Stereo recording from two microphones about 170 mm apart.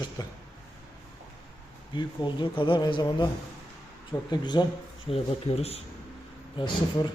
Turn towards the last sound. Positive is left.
turn(degrees=25)  # may be behind; listen again after turning